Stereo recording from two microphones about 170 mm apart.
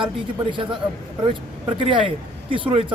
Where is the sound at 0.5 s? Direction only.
30° right (ahead or behind).